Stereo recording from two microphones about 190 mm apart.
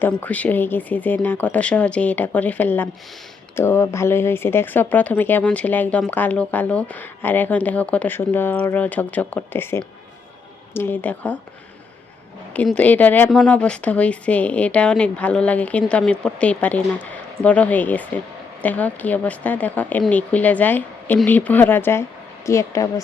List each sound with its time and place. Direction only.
0.0 s speech: 10° left (ahead or behind)
12.5 s speech: 5° left (ahead or behind)